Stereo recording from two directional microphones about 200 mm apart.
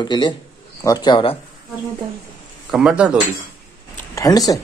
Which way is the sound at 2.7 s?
5° right (ahead or behind).